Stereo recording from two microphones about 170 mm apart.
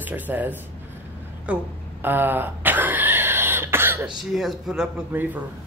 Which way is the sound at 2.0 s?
10° right (ahead or behind).